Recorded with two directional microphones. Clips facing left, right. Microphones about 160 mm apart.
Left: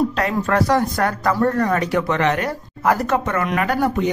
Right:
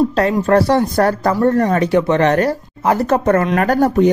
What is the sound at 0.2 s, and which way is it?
Speech, 30° right (ahead or behind).